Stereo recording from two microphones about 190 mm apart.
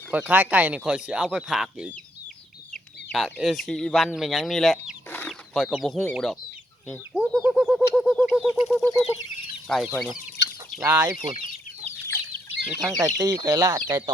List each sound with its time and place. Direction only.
0.1 s speech: 10° right (ahead or behind)
3.1 s speech: centre (ahead or behind)
7.1 s chicken: 5° right (ahead or behind)
7.3 s a sound: 5° right (ahead or behind)
9.6 s speech: centre (ahead or behind)
10.4 s chicken: 65° left (ahead or behind)
10.8 s speech: 15° right (ahead or behind)
12.8 s speech: 20° right (ahead or behind)